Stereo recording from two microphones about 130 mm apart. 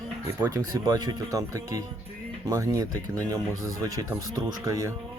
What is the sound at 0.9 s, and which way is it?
Speech, 30° right (ahead or behind).